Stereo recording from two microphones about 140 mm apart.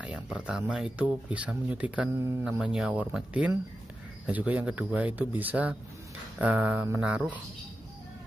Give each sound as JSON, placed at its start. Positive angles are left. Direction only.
{"t": 0.0, "sound": "speech", "side_deg": -10}